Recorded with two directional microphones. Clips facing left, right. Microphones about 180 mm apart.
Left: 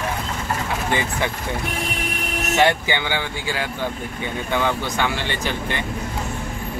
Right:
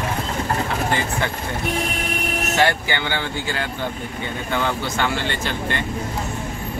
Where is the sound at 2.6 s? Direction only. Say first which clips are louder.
Left 2 dB; 15° left (ahead or behind).